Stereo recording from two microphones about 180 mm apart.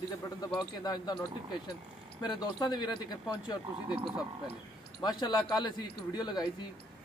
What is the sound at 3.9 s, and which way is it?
Speech, 5° right (ahead or behind).